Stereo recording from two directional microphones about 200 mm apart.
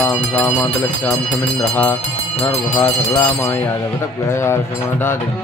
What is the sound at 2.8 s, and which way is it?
Speech, 15° left (ahead or behind).